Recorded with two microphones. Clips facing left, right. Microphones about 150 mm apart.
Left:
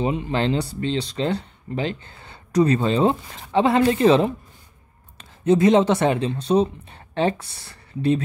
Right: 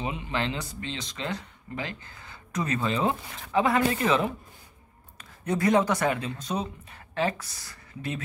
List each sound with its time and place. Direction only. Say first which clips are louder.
0.0 s speech: left 8 dB; 35° left (ahead or behind)